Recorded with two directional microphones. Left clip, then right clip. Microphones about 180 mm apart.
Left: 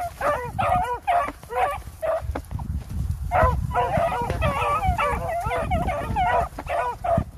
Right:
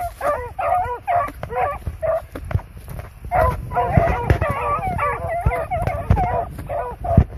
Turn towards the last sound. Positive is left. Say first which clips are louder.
# even
turn(degrees=35)  # may be behind; listen again after turning